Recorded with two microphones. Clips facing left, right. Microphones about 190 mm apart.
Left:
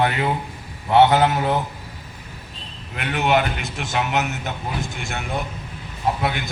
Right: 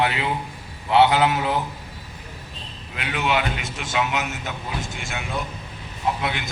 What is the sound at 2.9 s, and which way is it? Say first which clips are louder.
Speech: left 4 dB; 50° left (ahead or behind).